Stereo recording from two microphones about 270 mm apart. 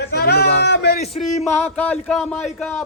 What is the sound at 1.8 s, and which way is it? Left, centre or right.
Speech, centre.